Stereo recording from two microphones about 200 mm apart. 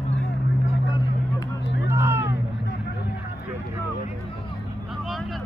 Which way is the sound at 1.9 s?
10° right (ahead or behind).